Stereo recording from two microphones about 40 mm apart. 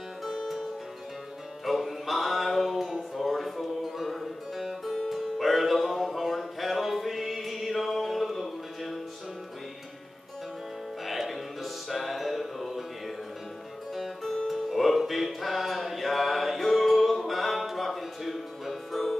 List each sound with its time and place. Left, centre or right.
0.2 s music: centre
1.7 s a sound: centre
11.1 s music: centre
13.9 s music: centre